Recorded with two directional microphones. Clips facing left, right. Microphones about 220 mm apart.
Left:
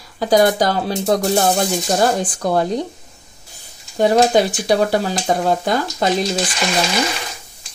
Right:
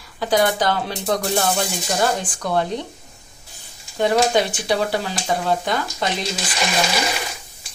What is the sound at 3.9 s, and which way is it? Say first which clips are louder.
Speech: left 4 dB; 40° left (ahead or behind).